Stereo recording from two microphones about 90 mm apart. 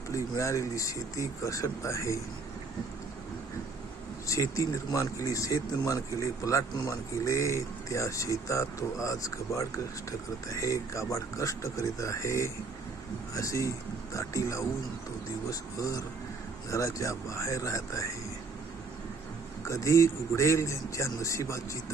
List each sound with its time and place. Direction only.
0.1 s speech: 35° left (ahead or behind)
4.3 s speech: 40° left (ahead or behind)
19.6 s speech: 35° left (ahead or behind)